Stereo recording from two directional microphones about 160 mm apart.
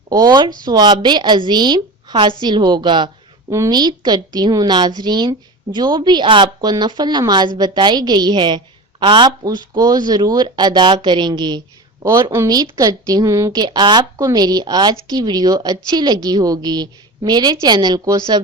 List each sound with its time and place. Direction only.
0.1 s speech: 25° right (ahead or behind)